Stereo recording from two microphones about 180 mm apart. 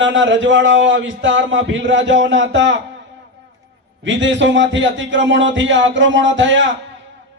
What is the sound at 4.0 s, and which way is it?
A man's voice, 90° right.